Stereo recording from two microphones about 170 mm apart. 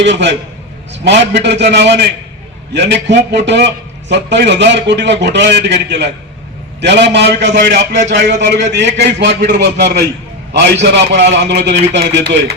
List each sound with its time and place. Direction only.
0.0 s a man's voice: 90° right
7.5 s a man's voice: 75° right (ahead or behind)
8.1 s a man's voice: 85° right